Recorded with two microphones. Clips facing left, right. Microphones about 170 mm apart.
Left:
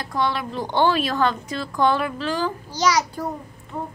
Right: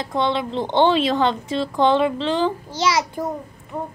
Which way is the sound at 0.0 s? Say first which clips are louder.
Right 3 dB; 25° right (ahead or behind).